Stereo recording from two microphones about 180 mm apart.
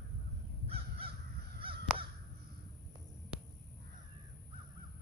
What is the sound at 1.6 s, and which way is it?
Crow, 30° right (ahead or behind).